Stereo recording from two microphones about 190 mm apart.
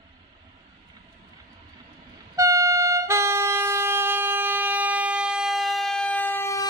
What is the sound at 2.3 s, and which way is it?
Vehicle, 15° right (ahead or behind).